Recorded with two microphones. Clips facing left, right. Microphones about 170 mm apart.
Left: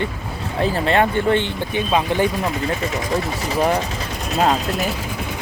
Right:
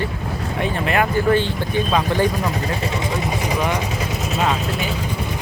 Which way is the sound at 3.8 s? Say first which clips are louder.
Right 2 dB; 5° right (ahead or behind).